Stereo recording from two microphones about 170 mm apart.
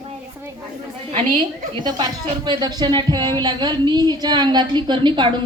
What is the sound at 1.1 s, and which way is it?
Speech, 30° right (ahead or behind).